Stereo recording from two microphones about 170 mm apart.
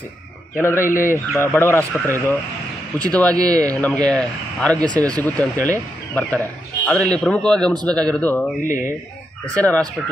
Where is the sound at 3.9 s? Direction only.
5° left (ahead or behind).